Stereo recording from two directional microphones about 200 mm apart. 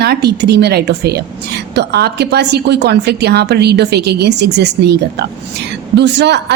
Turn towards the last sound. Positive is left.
turn(degrees=-60)  # may be behind; listen again after turning